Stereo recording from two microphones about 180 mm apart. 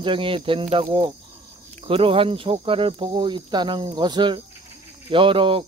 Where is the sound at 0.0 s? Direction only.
30° right (ahead or behind).